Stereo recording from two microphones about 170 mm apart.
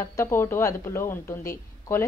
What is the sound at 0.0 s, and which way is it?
Speech, 15° left (ahead or behind).